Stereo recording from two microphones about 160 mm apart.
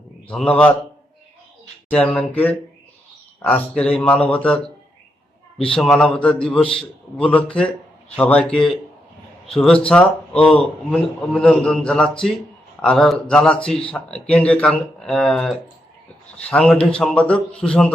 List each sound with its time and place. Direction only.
0.3 s a man's voice: 5° left (ahead or behind)
1.9 s a man's voice: 5° left (ahead or behind)